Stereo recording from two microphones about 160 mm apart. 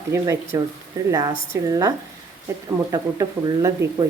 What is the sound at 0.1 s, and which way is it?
Speech, 15° right (ahead or behind).